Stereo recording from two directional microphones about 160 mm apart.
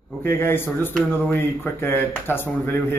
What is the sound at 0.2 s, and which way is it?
Speech, 15° left (ahead or behind).